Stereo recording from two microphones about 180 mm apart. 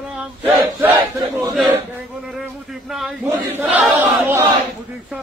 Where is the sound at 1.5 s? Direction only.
Centre (ahead or behind).